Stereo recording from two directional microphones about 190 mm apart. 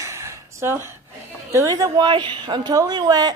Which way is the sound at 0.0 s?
15° right (ahead or behind).